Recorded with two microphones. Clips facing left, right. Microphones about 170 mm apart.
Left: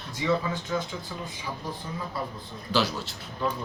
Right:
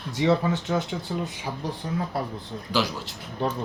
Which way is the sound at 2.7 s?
15° right (ahead or behind).